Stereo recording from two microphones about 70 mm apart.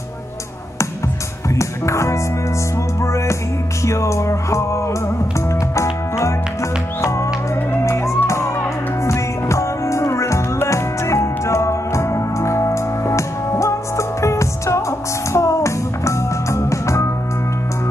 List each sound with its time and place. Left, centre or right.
1.6 s music: left